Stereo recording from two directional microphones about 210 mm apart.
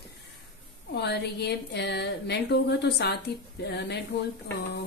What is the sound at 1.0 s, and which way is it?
Speech, 55° left (ahead or behind).